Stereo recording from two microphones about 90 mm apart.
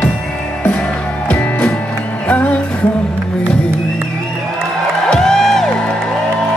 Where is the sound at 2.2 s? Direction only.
15° left (ahead or behind).